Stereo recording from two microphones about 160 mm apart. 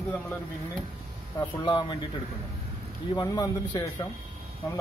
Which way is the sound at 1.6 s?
30° left (ahead or behind).